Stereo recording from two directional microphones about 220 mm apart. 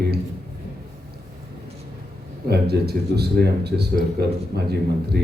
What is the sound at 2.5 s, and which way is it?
A man's voice, 45° right (ahead or behind).